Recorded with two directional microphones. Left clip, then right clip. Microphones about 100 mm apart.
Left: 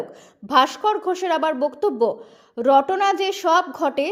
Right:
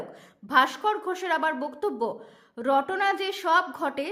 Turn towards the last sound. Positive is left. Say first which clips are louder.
# left 7 dB
turn(degrees=35)  # may be behind; listen again after turning